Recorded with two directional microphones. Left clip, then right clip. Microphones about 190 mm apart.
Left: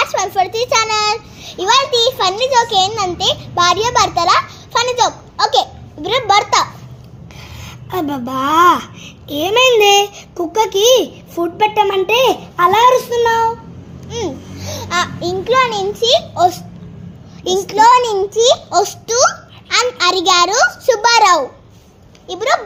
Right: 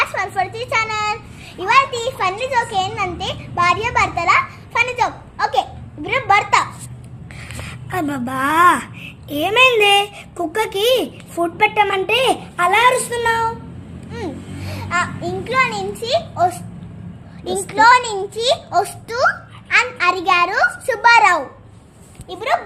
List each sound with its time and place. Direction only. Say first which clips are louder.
0.0 s a sound: left 4 dB; 25° left (ahead or behind)
1.6 s a child's voice: left 3 dB; 25° left (ahead or behind)
7.5 s a child's voice: left 2 dB; 15° left (ahead or behind)
14.1 s a child's voice: left 6 dB; 30° left (ahead or behind)